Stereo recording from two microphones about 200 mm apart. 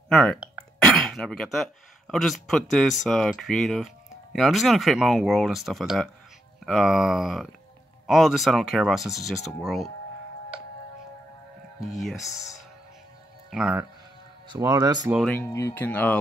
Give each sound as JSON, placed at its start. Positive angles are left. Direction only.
{"t": 0.1, "sound": "speech", "side_deg": 5}
{"t": 11.9, "sound": "speech", "side_deg": 0}
{"t": 13.5, "sound": "speech", "side_deg": -5}
{"t": 14.5, "sound": "speech", "side_deg": -20}
{"t": 15.2, "sound": "speech", "side_deg": 10}